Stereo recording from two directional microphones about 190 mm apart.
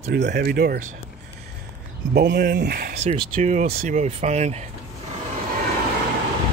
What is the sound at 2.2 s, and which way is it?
Speech, 60° right (ahead or behind).